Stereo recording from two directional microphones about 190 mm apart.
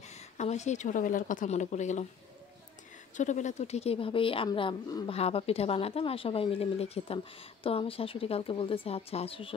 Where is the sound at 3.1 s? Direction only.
40° left (ahead or behind).